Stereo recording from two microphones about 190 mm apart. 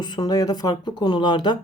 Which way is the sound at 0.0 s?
20° left (ahead or behind).